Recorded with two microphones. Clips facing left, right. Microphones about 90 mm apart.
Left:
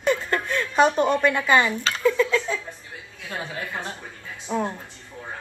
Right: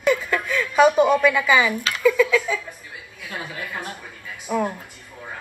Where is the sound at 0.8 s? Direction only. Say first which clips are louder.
Right 4 dB; 10° right (ahead or behind).